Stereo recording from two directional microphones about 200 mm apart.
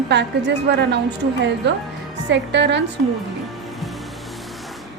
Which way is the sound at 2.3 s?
60° right (ahead or behind).